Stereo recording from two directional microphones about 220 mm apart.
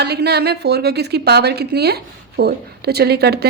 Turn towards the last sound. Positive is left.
turn(degrees=-45)  # may be behind; listen again after turning